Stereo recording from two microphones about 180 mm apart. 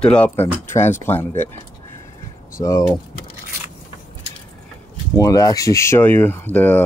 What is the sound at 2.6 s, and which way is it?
Speech, 20° left (ahead or behind).